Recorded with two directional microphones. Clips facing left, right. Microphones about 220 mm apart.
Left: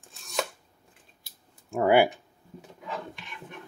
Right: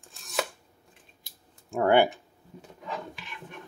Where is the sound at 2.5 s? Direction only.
Centre (ahead or behind).